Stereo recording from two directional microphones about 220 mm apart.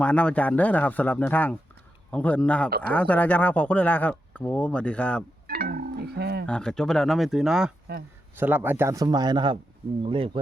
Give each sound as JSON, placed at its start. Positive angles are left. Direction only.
{"t": 0.0, "sound": "speech", "side_deg": 5}
{"t": 5.5, "sound": "music", "side_deg": -45}
{"t": 6.4, "sound": "speech", "side_deg": 5}
{"t": 7.9, "sound": "speech", "side_deg": -50}
{"t": 8.4, "sound": "speech", "side_deg": -10}